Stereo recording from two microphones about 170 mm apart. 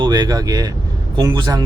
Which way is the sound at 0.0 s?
25° right (ahead or behind).